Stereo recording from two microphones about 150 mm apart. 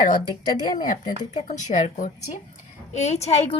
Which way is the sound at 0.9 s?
55° left (ahead or behind).